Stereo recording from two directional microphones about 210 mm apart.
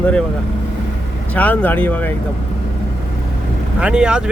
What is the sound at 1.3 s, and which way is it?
Speech, 5° left (ahead or behind).